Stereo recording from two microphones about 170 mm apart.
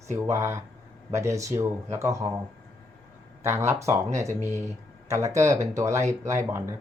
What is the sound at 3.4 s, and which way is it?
Speech, 15° right (ahead or behind).